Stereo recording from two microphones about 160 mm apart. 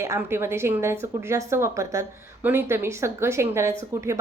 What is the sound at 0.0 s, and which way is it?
A woman's voice, 15° right (ahead or behind).